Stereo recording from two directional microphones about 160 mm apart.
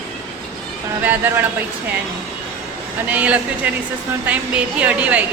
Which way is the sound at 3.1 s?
10° right (ahead or behind).